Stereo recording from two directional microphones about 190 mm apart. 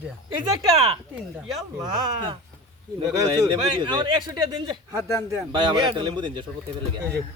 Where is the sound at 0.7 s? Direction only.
30° right (ahead or behind).